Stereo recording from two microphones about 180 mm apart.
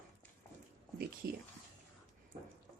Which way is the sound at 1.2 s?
60° right (ahead or behind).